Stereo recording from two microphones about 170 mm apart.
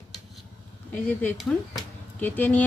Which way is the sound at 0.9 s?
10° left (ahead or behind).